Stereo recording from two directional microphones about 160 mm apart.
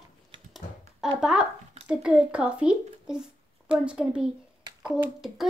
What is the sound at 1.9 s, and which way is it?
Speech, 5° right (ahead or behind).